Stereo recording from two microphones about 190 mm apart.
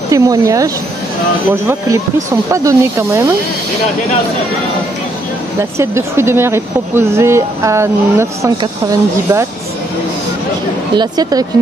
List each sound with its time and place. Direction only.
0.1 s speech: 15° right (ahead or behind)
5.6 s speech: 15° right (ahead or behind)
11.0 s a woman's voice: 20° right (ahead or behind)